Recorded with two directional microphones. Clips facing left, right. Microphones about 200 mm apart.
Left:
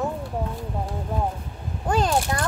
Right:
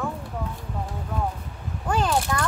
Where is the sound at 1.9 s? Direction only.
35° left (ahead or behind).